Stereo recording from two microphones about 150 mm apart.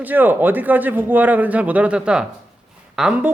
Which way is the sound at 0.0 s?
10° right (ahead or behind).